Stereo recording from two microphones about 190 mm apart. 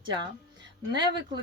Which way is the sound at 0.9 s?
25° right (ahead or behind).